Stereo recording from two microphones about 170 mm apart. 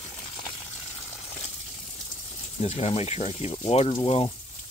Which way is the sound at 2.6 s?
40° left (ahead or behind).